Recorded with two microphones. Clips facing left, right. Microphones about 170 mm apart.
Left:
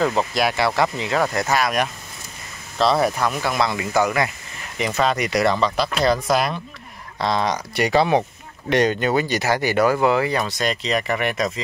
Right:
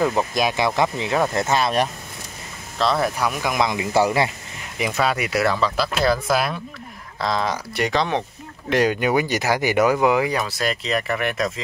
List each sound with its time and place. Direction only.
0.3 s speech: 20° right (ahead or behind)
2.8 s speech: centre (ahead or behind)
3.3 s speech: 15° right (ahead or behind)
3.9 s speech: 30° right (ahead or behind)
5.0 s speech: 5° right (ahead or behind)
8.6 s speech: 5° right (ahead or behind)